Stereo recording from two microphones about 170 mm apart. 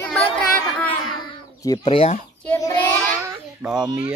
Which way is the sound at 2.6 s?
20° left (ahead or behind).